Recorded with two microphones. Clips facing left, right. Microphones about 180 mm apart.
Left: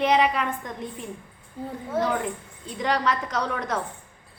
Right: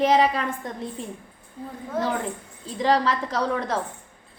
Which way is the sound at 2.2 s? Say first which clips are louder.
Even; 30° right (ahead or behind).